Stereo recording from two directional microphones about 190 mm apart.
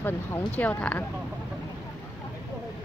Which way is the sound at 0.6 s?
10° left (ahead or behind).